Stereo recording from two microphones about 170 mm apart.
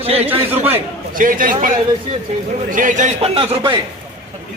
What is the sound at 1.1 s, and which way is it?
Speech, 55° right (ahead or behind).